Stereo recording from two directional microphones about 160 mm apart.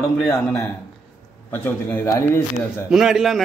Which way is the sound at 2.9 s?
Centre (ahead or behind).